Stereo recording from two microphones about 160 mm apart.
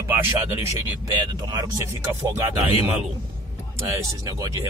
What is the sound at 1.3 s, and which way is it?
Speech, 25° right (ahead or behind).